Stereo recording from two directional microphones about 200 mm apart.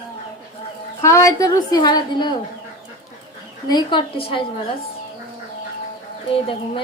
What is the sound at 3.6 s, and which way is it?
Speech, 20° left (ahead or behind).